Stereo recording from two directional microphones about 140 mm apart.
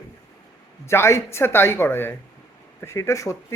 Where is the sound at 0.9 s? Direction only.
20° left (ahead or behind).